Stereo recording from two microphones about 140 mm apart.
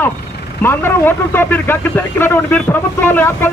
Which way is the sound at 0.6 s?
15° left (ahead or behind).